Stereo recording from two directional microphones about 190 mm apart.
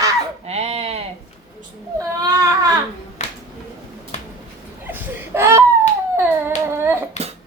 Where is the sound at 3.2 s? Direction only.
40° left (ahead or behind).